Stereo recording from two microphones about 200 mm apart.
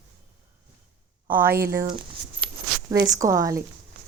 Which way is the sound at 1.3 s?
10° right (ahead or behind).